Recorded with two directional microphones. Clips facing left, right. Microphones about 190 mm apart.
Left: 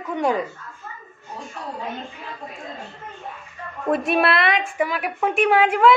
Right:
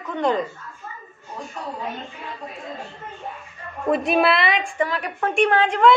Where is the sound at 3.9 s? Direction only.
Centre (ahead or behind).